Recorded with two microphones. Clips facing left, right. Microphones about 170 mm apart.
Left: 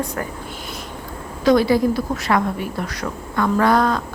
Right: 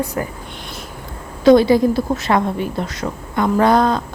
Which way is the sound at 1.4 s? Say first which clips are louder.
Right 4 dB; 25° right (ahead or behind).